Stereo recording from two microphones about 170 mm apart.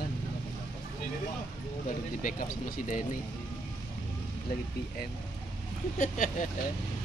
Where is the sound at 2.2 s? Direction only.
55° left (ahead or behind).